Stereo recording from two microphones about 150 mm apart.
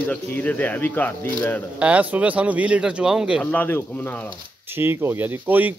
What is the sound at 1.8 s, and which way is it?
Speech, 10° right (ahead or behind).